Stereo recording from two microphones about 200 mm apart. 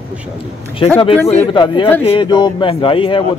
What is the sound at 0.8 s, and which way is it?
A man's voice, 25° left (ahead or behind).